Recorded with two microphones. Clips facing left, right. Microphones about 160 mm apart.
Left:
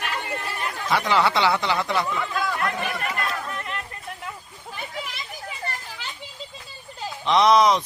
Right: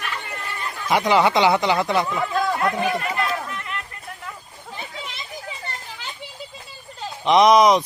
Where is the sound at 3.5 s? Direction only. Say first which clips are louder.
Even; 30° left (ahead or behind).